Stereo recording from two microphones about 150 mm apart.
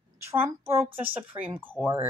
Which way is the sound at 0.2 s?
15° right (ahead or behind).